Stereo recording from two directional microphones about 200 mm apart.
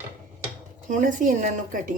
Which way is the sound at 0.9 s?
40° right (ahead or behind).